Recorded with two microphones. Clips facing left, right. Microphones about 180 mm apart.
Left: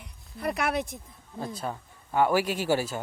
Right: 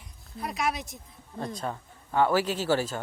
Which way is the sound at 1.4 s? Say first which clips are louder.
Even; 5° left (ahead or behind).